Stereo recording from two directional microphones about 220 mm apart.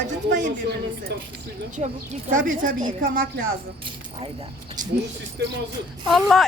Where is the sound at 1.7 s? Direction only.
35° right (ahead or behind).